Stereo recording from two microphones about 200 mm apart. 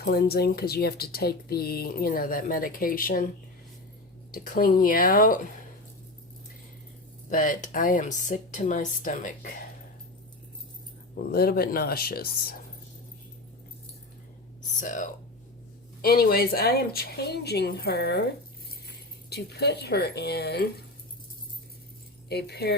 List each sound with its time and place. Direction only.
0.0 s speech: 50° left (ahead or behind)
4.3 s speech: 40° left (ahead or behind)
7.3 s speech: 40° left (ahead or behind)
11.3 s speech: 50° left (ahead or behind)
14.8 s speech: 40° left (ahead or behind); by 18.3 s 55° left (ahead or behind)
19.3 s speech: 55° left (ahead or behind)
22.3 s speech: 55° left (ahead or behind)